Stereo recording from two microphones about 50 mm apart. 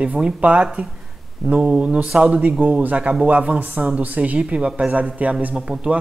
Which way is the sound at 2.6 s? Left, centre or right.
Right.